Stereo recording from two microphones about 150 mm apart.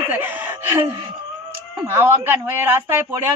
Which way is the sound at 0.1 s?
15° right (ahead or behind).